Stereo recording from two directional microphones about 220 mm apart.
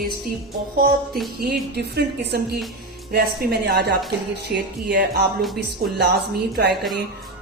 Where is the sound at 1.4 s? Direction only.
45° right (ahead or behind).